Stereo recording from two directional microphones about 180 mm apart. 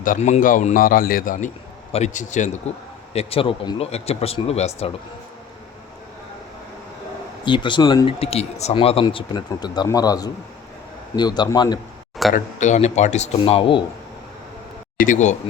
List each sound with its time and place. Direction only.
0.0 s a man's voice: 45° left (ahead or behind)
7.4 s speech: 25° left (ahead or behind)
12.3 s speech: 40° left (ahead or behind)
14.9 s speech: 45° left (ahead or behind)